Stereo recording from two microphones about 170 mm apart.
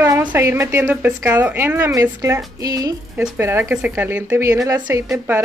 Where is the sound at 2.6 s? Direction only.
20° right (ahead or behind).